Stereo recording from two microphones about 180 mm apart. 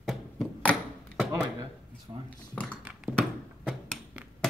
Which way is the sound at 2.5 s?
5° left (ahead or behind).